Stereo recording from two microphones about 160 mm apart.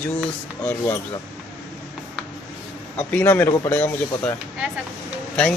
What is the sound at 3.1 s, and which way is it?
Speech, 10° left (ahead or behind).